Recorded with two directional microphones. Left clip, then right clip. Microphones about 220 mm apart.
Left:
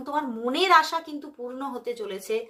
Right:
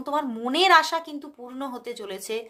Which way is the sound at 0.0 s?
40° right (ahead or behind).